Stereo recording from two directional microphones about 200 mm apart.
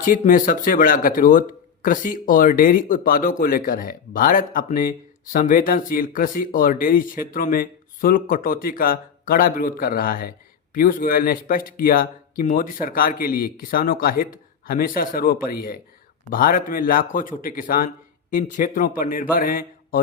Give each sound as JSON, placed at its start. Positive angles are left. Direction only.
{"t": 0.0, "sound": "speech", "side_deg": 45}